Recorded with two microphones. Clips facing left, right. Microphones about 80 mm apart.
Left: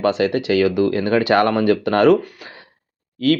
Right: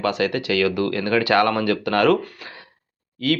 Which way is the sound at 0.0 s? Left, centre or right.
Left.